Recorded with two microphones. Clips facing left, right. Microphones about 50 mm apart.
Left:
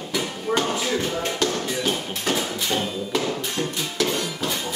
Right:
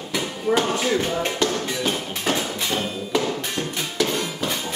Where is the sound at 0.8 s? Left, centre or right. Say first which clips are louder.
Right 2 dB; right.